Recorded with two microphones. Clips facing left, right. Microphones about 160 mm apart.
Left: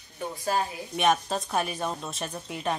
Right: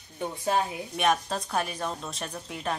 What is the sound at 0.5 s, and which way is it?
A woman's voice, centre (ahead or behind).